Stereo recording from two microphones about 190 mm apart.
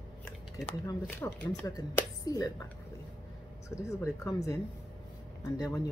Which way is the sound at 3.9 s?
15° left (ahead or behind).